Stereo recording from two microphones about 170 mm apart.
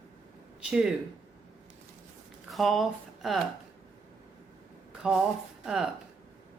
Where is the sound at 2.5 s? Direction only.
Centre (ahead or behind).